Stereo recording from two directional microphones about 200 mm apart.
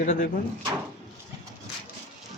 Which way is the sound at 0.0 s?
40° left (ahead or behind).